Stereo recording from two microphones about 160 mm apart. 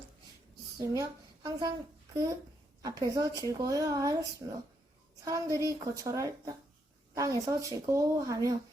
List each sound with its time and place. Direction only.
0.8 s speech: 25° right (ahead or behind)
2.8 s speech: 20° right (ahead or behind)